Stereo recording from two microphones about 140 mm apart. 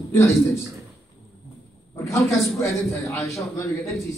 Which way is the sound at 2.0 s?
20° left (ahead or behind).